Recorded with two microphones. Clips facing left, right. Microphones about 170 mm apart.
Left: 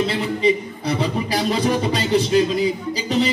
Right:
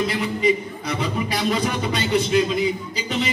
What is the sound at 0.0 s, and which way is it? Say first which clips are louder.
A man's voice: left 2 dB; 30° left (ahead or behind).